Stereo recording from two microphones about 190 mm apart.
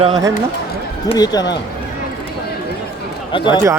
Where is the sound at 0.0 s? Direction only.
20° right (ahead or behind).